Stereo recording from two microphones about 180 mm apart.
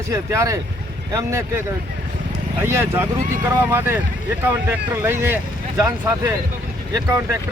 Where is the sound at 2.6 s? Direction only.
10° right (ahead or behind).